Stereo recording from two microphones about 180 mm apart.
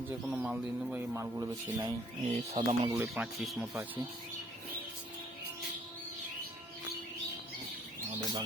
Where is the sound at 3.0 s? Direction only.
5° right (ahead or behind).